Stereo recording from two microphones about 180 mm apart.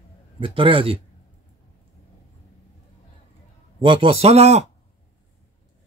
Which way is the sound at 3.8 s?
30° right (ahead or behind).